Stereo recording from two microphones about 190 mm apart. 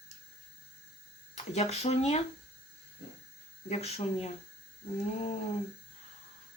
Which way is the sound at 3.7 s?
35° left (ahead or behind).